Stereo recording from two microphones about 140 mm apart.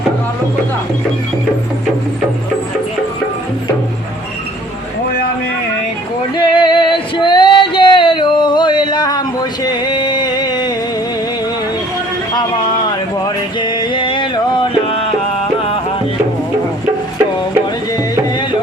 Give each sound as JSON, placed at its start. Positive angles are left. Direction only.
{"t": 6.3, "sound": "male singing", "side_deg": 35}
{"t": 13.2, "sound": "music", "side_deg": 30}